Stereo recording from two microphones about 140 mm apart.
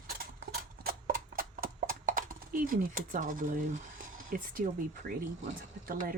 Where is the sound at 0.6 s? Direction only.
90° right; by 3.6 s 70° right (ahead or behind).